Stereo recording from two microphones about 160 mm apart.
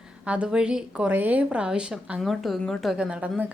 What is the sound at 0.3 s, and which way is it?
A woman's voice, 5° right (ahead or behind).